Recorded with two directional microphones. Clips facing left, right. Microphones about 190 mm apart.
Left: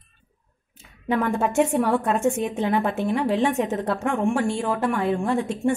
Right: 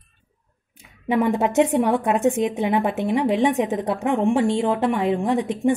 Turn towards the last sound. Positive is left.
turn(degrees=-15)  # may be behind; listen again after turning